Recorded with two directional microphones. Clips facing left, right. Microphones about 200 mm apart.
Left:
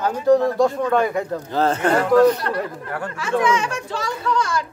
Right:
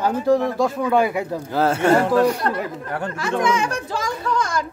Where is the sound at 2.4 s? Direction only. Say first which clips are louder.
Right 1 dB; 40° right (ahead or behind).